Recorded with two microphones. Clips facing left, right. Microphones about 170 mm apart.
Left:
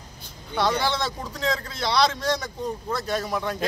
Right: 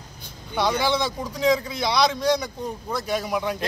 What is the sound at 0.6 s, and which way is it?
A man's voice, centre (ahead or behind).